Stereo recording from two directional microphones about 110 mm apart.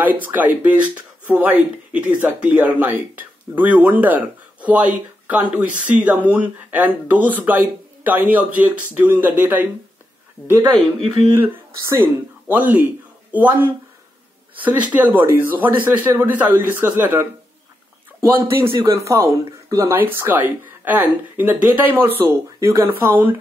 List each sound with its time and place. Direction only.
0.0 s speech: 15° right (ahead or behind)
11.9 s speech: 20° right (ahead or behind)